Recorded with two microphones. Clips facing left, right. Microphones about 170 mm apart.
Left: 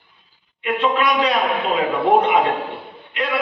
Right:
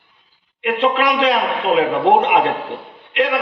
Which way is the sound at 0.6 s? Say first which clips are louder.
Right 2 dB; 85° right.